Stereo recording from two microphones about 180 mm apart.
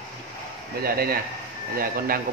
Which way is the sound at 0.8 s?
55° right (ahead or behind).